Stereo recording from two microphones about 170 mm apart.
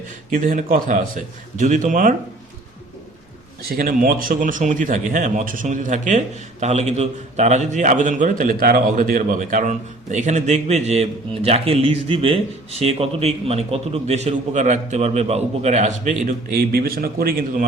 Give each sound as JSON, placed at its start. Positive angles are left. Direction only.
{"t": 0.3, "sound": "speech", "side_deg": -50}
{"t": 3.6, "sound": "a man's voice", "side_deg": -60}